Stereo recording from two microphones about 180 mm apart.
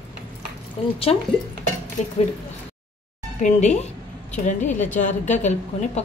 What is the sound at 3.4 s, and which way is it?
A woman's voice, 40° left (ahead or behind).